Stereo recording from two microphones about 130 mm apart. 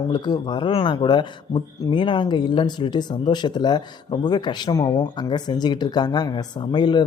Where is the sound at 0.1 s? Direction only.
35° left (ahead or behind).